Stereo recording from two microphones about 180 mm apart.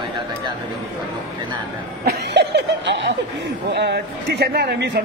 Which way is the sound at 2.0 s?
70° right (ahead or behind).